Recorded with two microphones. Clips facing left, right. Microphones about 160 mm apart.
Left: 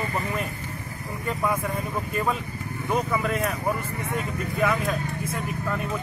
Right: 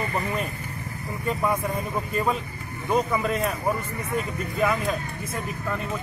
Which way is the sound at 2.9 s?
5° left (ahead or behind).